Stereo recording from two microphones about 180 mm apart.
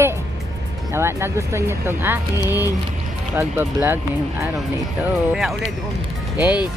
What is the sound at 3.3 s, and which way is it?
Speech, 15° right (ahead or behind).